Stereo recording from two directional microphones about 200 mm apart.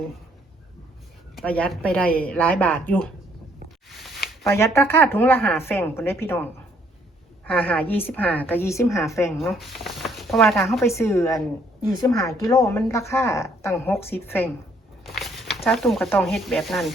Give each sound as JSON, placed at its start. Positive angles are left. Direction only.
{"t": 1.4, "sound": "speech", "side_deg": 5}
{"t": 3.8, "sound": "a sound", "side_deg": 0}
{"t": 4.5, "sound": "speech", "side_deg": 15}
{"t": 9.4, "sound": "speech", "side_deg": 0}
{"t": 11.0, "sound": "a woman's voice", "side_deg": 15}
{"t": 15.0, "sound": "a sound", "side_deg": 0}
{"t": 15.7, "sound": "speech", "side_deg": 0}